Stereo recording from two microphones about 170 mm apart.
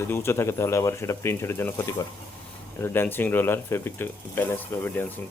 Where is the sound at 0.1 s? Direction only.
15° left (ahead or behind).